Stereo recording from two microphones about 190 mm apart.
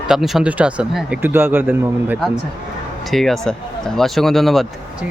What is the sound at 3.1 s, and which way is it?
Speech, centre (ahead or behind).